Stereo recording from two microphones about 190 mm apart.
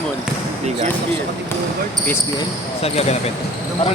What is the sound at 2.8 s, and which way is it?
Speech, 35° left (ahead or behind).